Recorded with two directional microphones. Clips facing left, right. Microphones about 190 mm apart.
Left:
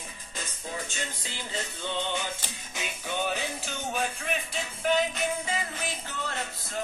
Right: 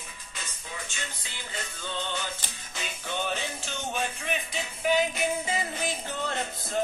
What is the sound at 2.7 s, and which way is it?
Music, 10° left (ahead or behind).